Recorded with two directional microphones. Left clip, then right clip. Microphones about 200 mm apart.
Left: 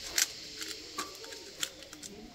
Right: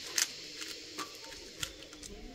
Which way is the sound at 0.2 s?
5° right (ahead or behind).